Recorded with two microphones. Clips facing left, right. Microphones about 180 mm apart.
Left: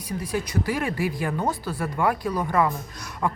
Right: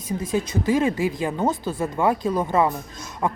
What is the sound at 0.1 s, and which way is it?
A woman's voice, 20° right (ahead or behind).